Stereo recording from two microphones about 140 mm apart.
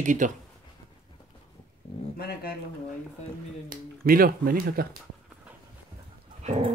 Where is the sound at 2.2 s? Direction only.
90° left.